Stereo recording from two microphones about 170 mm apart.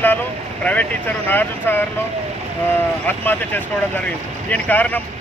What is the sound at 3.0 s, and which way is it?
Speech, 10° left (ahead or behind).